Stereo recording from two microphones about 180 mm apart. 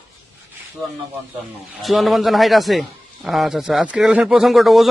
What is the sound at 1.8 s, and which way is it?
Speech, centre (ahead or behind).